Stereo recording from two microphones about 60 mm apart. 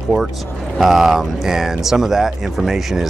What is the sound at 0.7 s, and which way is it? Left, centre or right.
Speech, centre.